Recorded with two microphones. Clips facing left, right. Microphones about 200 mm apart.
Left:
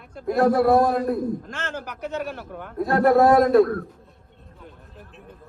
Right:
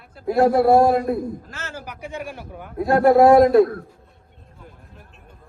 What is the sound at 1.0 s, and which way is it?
A man's voice, 5° right (ahead or behind).